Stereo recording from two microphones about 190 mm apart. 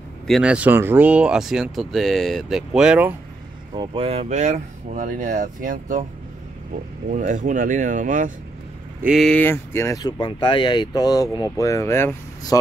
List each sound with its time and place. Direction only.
0.3 s speech: 5° right (ahead or behind)
3.7 s speech: 25° right (ahead or behind); by 6.0 s 45° right (ahead or behind)
7.1 s speech: 40° right (ahead or behind)
9.0 s speech: centre (ahead or behind)